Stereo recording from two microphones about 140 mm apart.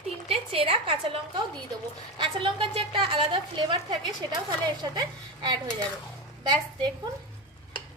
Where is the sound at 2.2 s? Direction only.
40° right (ahead or behind).